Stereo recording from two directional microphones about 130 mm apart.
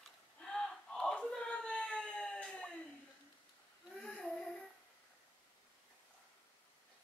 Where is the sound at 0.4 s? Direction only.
5° left (ahead or behind).